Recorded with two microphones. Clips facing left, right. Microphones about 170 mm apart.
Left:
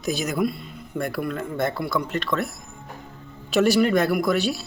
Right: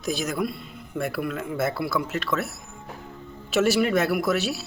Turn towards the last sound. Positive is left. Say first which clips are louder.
# left 2 dB
turn(degrees=-5)  # may be behind; listen again after turning